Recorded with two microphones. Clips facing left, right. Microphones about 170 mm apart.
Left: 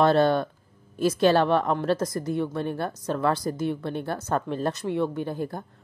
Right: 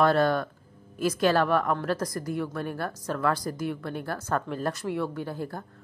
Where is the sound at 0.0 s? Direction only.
25° left (ahead or behind).